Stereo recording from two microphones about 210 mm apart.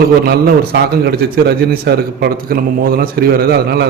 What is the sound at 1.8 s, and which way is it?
A man's voice, 50° right (ahead or behind).